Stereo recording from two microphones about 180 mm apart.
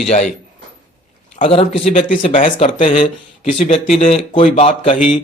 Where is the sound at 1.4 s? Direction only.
35° left (ahead or behind).